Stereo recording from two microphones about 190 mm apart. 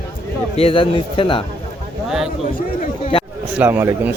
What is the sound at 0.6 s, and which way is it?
Speech, 30° left (ahead or behind).